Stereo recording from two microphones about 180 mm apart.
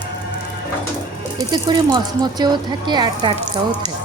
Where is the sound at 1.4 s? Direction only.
25° right (ahead or behind).